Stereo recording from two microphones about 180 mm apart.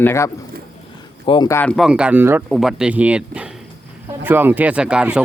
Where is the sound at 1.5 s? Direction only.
5° left (ahead or behind).